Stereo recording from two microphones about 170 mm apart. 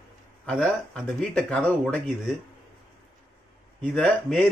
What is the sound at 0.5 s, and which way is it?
A man's voice, 5° left (ahead or behind).